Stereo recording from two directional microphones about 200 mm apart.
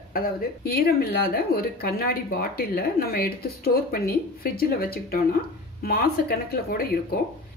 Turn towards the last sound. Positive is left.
turn(degrees=50)  # may be behind; listen again after turning